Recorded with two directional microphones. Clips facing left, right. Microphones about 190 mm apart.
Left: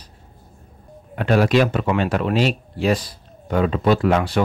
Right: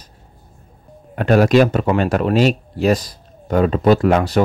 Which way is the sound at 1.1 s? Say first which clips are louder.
Right 4 dB; 45° right (ahead or behind).